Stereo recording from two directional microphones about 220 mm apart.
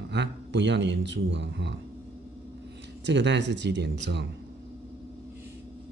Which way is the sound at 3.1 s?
55° right (ahead or behind).